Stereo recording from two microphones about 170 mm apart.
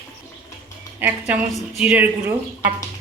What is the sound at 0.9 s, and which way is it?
A woman's voice, 10° right (ahead or behind).